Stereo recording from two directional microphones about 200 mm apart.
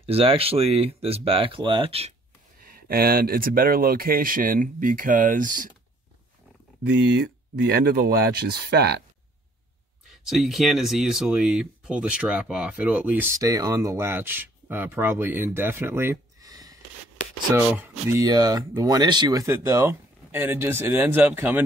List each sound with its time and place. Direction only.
0.0 s speech: 30° right (ahead or behind)
2.6 s speech: 45° right (ahead or behind)
6.9 s speech: 65° right (ahead or behind)
10.1 s speech: centre (ahead or behind)